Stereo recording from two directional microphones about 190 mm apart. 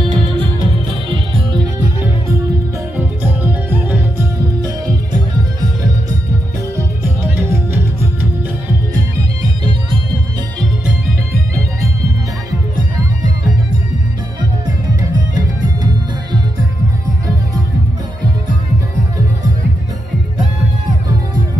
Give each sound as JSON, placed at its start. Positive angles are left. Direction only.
{"t": 0.0, "sound": "music", "side_deg": -30}
{"t": 3.0, "sound": "music", "side_deg": -10}
{"t": 15.3, "sound": "music", "side_deg": -20}